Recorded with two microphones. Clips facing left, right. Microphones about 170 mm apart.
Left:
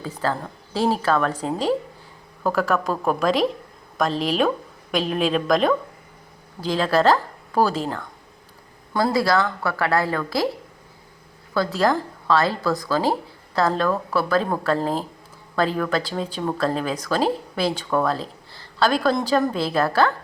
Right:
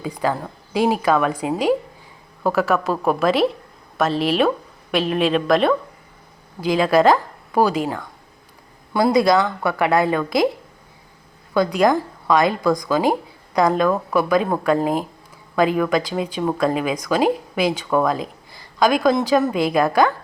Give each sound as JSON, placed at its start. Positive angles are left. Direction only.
{"t": 0.0, "sound": "a woman's voice", "side_deg": -15}
{"t": 11.5, "sound": "speech", "side_deg": -15}